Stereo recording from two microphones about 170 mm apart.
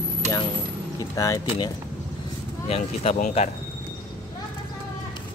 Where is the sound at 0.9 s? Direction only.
20° left (ahead or behind).